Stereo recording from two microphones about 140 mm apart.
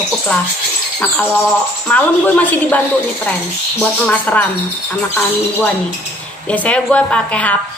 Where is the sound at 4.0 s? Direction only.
10° left (ahead or behind).